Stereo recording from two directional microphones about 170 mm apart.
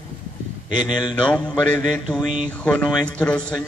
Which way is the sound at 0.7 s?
25° left (ahead or behind).